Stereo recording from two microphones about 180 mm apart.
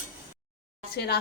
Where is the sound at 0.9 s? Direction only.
65° left (ahead or behind).